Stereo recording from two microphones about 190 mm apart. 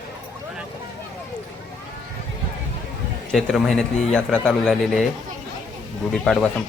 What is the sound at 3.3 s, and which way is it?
Speech, centre (ahead or behind).